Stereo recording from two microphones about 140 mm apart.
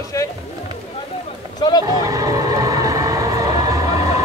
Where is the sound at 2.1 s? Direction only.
25° right (ahead or behind).